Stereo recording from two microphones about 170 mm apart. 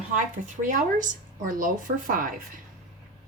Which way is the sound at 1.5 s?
50° right (ahead or behind).